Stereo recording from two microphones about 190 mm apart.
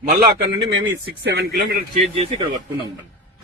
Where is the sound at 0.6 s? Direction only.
90° right; by 2.1 s 50° right (ahead or behind).